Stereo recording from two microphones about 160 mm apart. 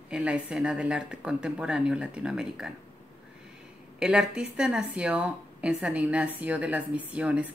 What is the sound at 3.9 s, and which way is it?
A woman's voice, 5° right (ahead or behind).